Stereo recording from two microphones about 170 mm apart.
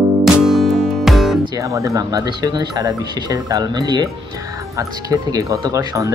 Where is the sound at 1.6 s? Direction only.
20° right (ahead or behind).